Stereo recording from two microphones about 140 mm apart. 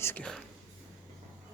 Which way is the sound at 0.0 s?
10° left (ahead or behind).